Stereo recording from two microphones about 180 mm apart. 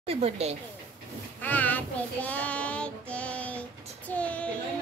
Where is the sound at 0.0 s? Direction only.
35° right (ahead or behind).